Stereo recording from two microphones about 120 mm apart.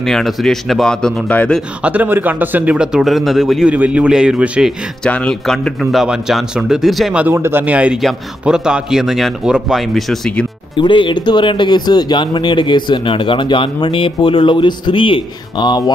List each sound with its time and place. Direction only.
0.0 s a man's voice: centre (ahead or behind)
1.8 s speech: 10° right (ahead or behind)
3.7 s speech: 15° right (ahead or behind)
5.0 s a man's voice: 10° left (ahead or behind)
7.2 s a man's voice: 20° right (ahead or behind); by 10.4 s 5° left (ahead or behind)
10.8 s speech: 45° left (ahead or behind)